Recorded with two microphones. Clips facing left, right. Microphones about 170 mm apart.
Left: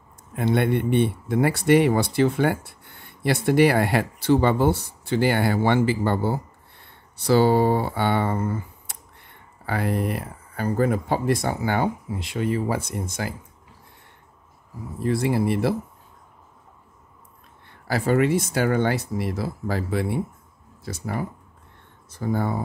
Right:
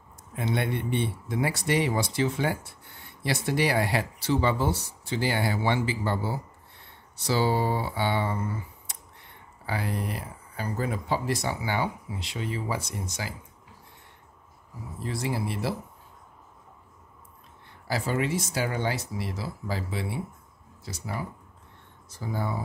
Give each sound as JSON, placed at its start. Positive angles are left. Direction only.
{"t": 0.4, "sound": "speech", "side_deg": 55}
{"t": 15.0, "sound": "speech", "side_deg": 60}
{"t": 17.8, "sound": "speech", "side_deg": 55}